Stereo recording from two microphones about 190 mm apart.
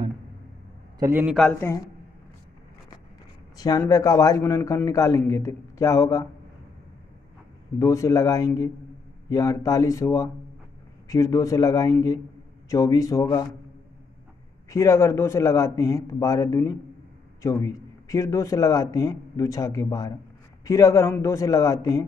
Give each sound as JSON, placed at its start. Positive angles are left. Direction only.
{"t": 0.9, "sound": "a man's voice", "side_deg": -15}
{"t": 1.2, "sound": "speech", "side_deg": 0}
{"t": 3.5, "sound": "speech", "side_deg": 20}
{"t": 7.8, "sound": "a man's voice", "side_deg": 15}
{"t": 14.7, "sound": "speech", "side_deg": 15}